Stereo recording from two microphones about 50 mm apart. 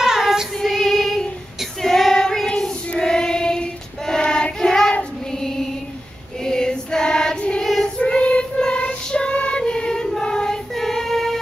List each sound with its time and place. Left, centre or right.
0.0 s child singing: centre
0.6 s music: centre
1.8 s child singing: centre
5.3 s music: centre
6.4 s female singing: centre
7.6 s child singing: centre
8.0 s child singing: left
9.6 s choir: centre